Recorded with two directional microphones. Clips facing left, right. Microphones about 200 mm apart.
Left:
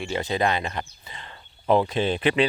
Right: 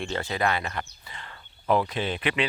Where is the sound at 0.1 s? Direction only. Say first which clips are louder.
Left 4 dB; 20° left (ahead or behind).